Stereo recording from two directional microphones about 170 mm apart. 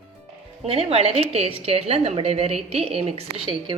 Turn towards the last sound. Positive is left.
turn(degrees=-35)  # may be behind; listen again after turning